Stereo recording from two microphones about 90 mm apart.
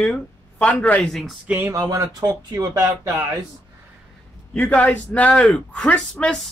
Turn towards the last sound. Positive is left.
turn(degrees=15)  # may be behind; listen again after turning